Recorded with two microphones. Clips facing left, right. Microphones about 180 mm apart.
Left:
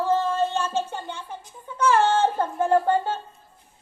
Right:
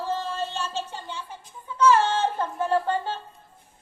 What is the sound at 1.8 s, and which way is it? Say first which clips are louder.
Music: left 1 dB; 50° left (ahead or behind).